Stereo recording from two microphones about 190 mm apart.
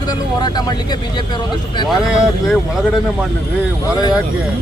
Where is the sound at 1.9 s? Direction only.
Centre (ahead or behind).